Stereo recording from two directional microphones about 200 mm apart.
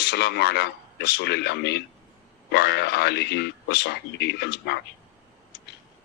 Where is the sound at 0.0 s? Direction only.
55° left (ahead or behind).